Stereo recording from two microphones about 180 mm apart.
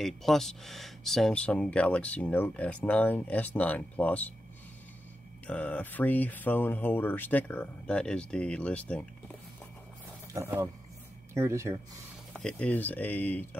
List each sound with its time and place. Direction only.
0.0 s speech: centre (ahead or behind)
5.5 s speech: 5° left (ahead or behind)
10.3 s speech: 15° right (ahead or behind)
12.3 s speech: 5° left (ahead or behind)